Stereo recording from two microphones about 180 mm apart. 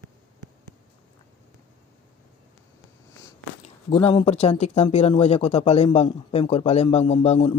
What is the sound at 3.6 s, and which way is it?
Speech, 30° left (ahead or behind).